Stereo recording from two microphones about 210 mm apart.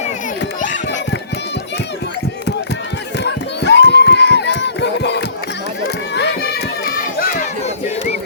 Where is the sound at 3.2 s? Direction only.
55° left (ahead or behind).